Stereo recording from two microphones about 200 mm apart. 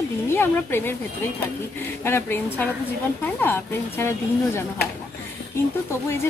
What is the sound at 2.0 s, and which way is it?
A woman's voice, 10° left (ahead or behind).